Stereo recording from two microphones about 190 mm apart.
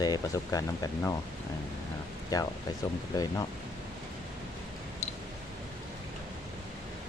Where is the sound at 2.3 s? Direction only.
20° left (ahead or behind).